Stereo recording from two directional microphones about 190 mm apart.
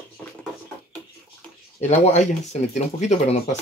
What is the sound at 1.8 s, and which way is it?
Speech, 35° left (ahead or behind).